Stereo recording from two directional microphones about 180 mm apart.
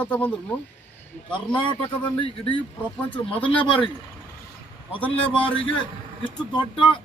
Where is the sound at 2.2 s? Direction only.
30° left (ahead or behind).